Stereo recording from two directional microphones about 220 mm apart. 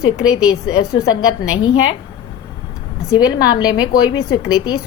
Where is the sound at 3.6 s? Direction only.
75° left (ahead or behind).